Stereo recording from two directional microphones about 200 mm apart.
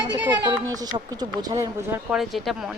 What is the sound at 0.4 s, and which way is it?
A woman's voice, 20° right (ahead or behind).